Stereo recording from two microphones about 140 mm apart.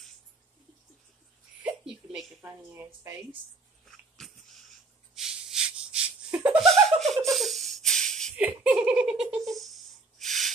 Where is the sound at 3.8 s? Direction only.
Centre (ahead or behind).